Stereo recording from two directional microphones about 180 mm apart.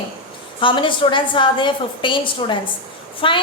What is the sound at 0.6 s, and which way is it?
A woman's voice, 25° left (ahead or behind).